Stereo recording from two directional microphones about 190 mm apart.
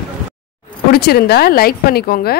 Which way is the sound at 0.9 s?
55° left (ahead or behind).